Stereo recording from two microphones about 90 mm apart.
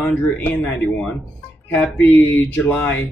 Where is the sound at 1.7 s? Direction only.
20° left (ahead or behind).